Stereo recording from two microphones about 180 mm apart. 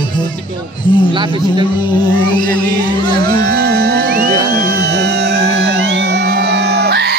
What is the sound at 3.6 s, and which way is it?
Music, 60° right (ahead or behind).